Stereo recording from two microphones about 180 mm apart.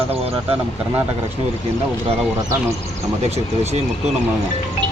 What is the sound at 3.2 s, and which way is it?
Speech, 35° right (ahead or behind).